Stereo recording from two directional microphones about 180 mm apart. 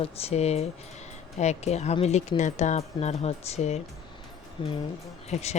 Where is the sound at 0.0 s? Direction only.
35° left (ahead or behind).